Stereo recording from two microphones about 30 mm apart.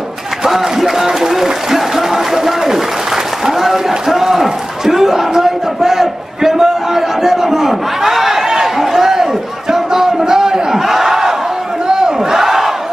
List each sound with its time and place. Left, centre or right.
0.5 s speech: centre
3.4 s a sound: centre
11.9 s crowd: right